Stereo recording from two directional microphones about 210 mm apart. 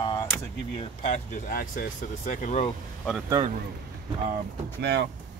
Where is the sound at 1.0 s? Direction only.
35° left (ahead or behind).